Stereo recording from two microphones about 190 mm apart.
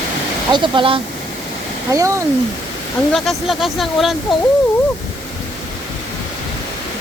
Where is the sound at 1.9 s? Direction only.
15° right (ahead or behind).